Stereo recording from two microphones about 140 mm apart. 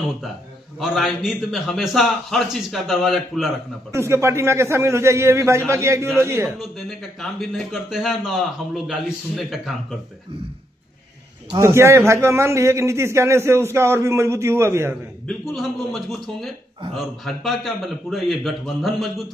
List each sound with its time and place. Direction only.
0.7 s a man's voice: centre (ahead or behind)
3.9 s a man's voice: 20° right (ahead or behind)
6.6 s a man's voice: centre (ahead or behind)
11.6 s a man's voice: 20° right (ahead or behind)
15.2 s a man's voice: centre (ahead or behind)